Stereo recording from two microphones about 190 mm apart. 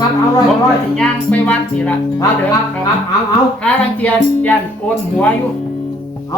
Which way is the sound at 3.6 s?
10° left (ahead or behind).